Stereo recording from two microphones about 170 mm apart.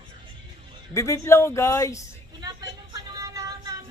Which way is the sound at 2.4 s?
20° right (ahead or behind).